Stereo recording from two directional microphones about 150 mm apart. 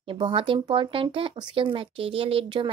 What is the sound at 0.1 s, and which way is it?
Speech, 35° right (ahead or behind).